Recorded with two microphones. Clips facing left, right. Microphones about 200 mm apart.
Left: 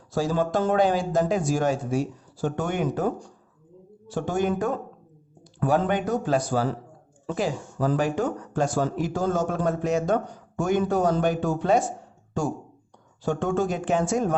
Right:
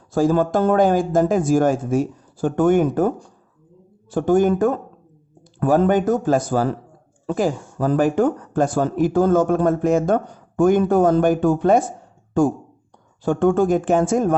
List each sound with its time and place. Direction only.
0.1 s speech: 50° right (ahead or behind)
4.1 s speech: 50° right (ahead or behind)